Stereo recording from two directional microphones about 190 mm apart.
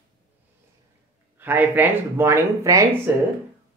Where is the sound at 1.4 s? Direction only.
10° right (ahead or behind).